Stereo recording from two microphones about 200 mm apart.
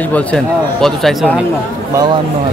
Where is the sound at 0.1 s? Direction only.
5° left (ahead or behind).